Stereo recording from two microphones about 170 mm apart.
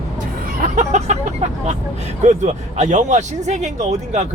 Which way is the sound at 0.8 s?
40° right (ahead or behind).